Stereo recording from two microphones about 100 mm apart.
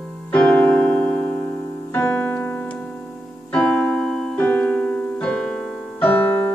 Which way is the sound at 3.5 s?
15° left (ahead or behind).